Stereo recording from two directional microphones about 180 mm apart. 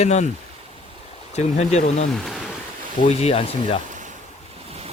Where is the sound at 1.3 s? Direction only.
40° left (ahead or behind).